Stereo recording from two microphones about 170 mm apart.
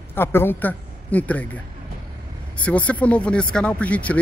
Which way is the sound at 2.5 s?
10° left (ahead or behind).